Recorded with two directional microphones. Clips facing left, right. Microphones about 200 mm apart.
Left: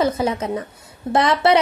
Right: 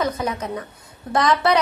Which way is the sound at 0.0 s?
30° left (ahead or behind).